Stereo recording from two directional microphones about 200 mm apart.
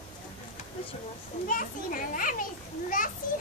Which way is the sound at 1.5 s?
40° left (ahead or behind).